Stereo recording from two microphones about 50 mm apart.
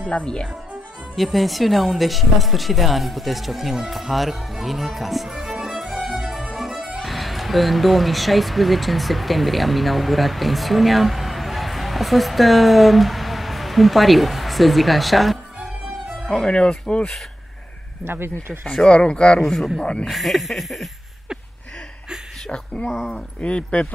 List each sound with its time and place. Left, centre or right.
0.1 s speech: centre
1.1 s speech: centre
5.9 s music: centre
7.0 s speech: centre
16.4 s speech: centre
18.0 s speech: right
18.9 s speech: centre
19.4 s speech: centre
19.8 s speech: left
20.1 s speech: centre
22.8 s speech: centre
23.4 s speech: left